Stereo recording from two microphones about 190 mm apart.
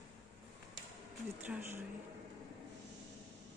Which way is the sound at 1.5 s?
10° right (ahead or behind).